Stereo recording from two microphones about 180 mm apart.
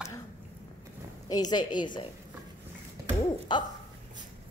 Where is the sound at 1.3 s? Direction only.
20° left (ahead or behind).